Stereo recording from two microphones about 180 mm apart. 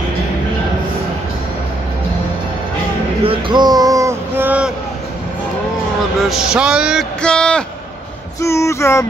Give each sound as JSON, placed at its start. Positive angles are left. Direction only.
{"t": 3.3, "sound": "a sound", "side_deg": -25}
{"t": 6.2, "sound": "a man's voice", "side_deg": -5}
{"t": 8.4, "sound": "female singing", "side_deg": 15}